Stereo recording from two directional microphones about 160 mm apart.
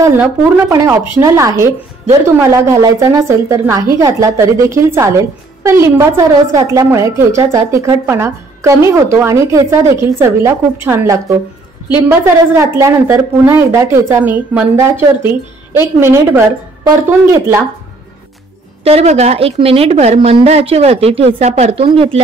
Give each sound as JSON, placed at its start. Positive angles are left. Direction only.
{"t": 0.0, "sound": "a woman's voice", "side_deg": -15}
{"t": 17.3, "sound": "speech", "side_deg": -15}
{"t": 18.9, "sound": "a woman's voice", "side_deg": -40}